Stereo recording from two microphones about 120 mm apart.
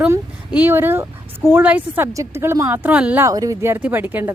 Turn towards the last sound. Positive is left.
turn(degrees=-15)  # may be behind; listen again after turning